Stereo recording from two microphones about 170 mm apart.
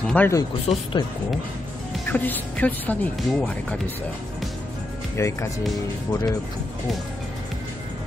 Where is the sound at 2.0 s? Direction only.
10° left (ahead or behind).